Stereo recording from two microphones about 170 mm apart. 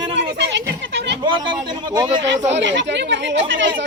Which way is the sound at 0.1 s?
90° right.